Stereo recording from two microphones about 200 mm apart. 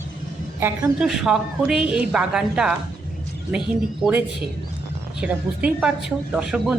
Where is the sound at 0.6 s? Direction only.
5° right (ahead or behind).